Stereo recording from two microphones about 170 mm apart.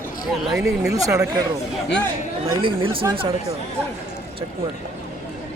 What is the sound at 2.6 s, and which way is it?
Speech, 30° right (ahead or behind).